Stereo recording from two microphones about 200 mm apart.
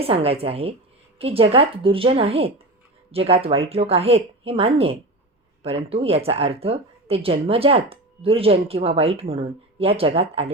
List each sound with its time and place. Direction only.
0.0 s speech: 30° right (ahead or behind)